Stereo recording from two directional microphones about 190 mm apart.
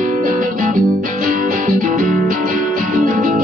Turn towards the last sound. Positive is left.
turn(degrees=-45)  # may be behind; listen again after turning